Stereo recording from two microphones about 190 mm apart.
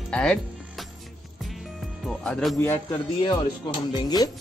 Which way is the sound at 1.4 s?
Centre (ahead or behind).